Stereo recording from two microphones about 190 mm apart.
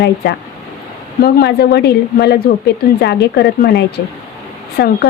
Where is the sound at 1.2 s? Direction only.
60° left (ahead or behind).